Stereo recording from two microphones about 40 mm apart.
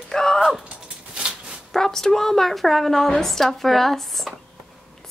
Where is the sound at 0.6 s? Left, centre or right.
Right.